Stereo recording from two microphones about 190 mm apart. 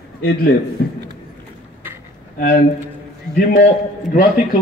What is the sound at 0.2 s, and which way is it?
Speech, 50° left (ahead or behind).